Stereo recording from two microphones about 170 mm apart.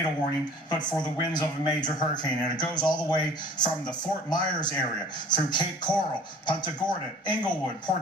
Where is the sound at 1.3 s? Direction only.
25° left (ahead or behind).